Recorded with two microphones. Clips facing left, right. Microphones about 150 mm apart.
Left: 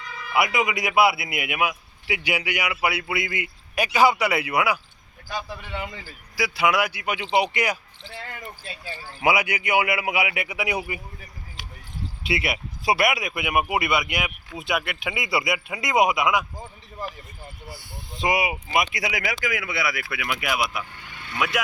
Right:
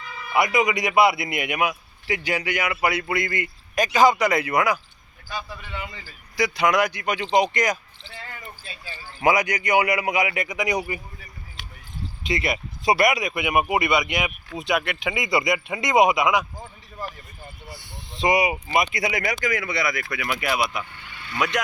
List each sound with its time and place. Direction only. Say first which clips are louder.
0.3 s a man's voice: right 2 dB; 5° left (ahead or behind)
6.3 s a man's voice: right 2 dB; 5° left (ahead or behind)
9.2 s a man's voice: right 2 dB; 10° left (ahead or behind)
11.6 s basketball bounce: left 1 dB; 15° left (ahead or behind)
12.2 s speech: right 1 dB; 5° left (ahead or behind)
18.1 s speech: right 3 dB; centre (ahead or behind)
20.9 s vehicle: even; 45° left (ahead or behind)
21.3 s speech: right 1 dB; 5° left (ahead or behind)